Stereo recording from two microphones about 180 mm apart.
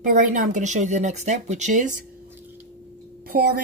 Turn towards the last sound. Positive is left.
turn(degrees=-55)  # may be behind; listen again after turning